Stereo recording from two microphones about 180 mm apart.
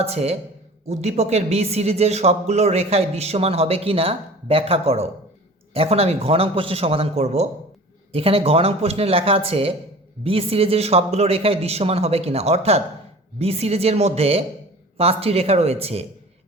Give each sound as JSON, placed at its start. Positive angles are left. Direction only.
{"t": 0.0, "sound": "speech", "side_deg": -35}